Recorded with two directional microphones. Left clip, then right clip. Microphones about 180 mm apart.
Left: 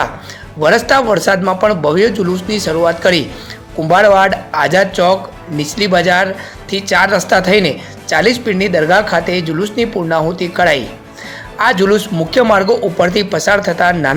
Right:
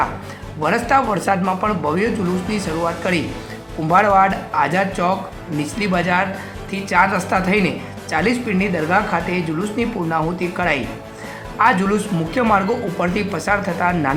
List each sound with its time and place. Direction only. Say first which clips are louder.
0.6 s speech: left 6 dB; 25° left (ahead or behind)